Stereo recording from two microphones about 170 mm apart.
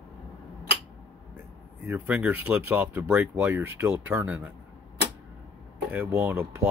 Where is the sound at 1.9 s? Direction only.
10° right (ahead or behind).